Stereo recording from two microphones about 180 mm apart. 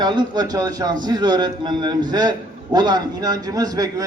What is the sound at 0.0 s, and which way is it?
A man's voice, 25° right (ahead or behind).